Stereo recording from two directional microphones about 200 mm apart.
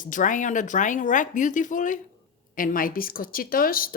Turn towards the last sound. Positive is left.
turn(degrees=45)  # may be behind; listen again after turning